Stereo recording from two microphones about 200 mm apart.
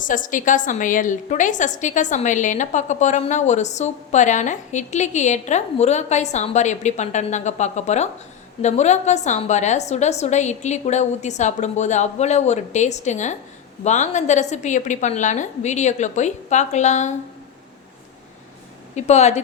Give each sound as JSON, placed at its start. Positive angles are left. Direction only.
{"t": 0.0, "sound": "a woman's voice", "side_deg": 40}
{"t": 18.9, "sound": "a woman's voice", "side_deg": 35}